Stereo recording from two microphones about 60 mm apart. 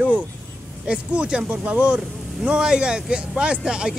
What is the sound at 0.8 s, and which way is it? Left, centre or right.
Speech, centre.